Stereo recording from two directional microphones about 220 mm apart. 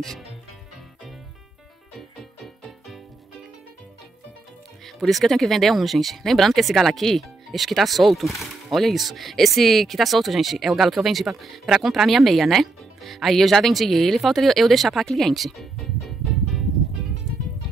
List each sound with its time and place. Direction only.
0.0 s speech: centre (ahead or behind)
2.0 s music: centre (ahead or behind)
4.8 s speech: centre (ahead or behind)